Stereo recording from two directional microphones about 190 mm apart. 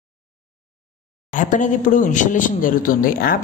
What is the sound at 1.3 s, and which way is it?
A man's voice, 40° left (ahead or behind).